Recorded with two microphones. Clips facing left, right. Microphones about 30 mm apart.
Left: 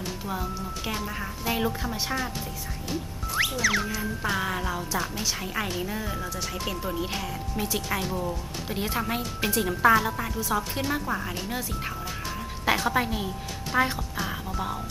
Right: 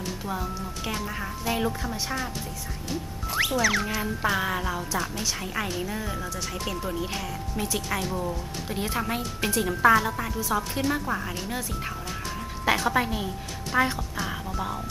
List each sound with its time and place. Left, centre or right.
0.0 s speech: centre
2.9 s music: centre
3.8 s music: centre
4.3 s speech: centre
12.6 s a woman's voice: centre